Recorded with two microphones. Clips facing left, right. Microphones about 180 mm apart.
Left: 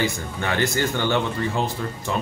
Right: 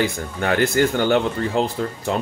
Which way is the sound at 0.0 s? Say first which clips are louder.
Right 3 dB; 55° right (ahead or behind).